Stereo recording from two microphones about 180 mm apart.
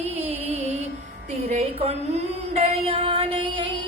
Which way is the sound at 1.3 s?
40° right (ahead or behind).